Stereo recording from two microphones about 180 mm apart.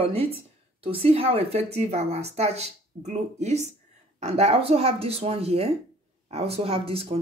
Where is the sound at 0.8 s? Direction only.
30° right (ahead or behind).